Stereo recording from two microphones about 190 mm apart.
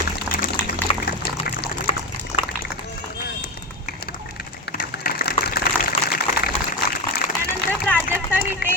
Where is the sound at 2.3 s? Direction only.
60° left (ahead or behind).